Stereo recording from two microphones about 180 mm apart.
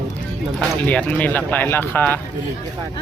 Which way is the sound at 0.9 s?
10° left (ahead or behind).